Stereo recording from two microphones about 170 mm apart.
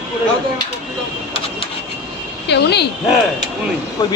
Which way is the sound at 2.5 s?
75° left (ahead or behind).